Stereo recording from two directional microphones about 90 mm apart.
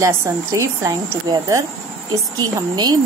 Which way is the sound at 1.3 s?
50° right (ahead or behind).